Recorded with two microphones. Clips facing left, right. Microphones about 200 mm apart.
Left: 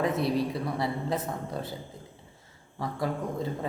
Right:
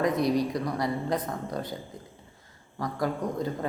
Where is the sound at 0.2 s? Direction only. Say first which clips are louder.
Right 2 dB; 30° left (ahead or behind).